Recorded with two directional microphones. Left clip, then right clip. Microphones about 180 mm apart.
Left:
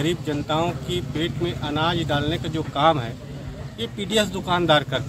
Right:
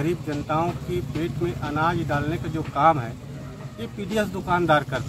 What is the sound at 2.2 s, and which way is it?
Speech, 30° left (ahead or behind).